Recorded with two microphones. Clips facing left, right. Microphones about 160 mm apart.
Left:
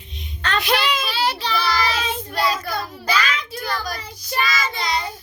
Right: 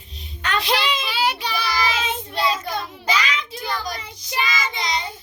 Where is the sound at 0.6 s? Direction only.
25° right (ahead or behind).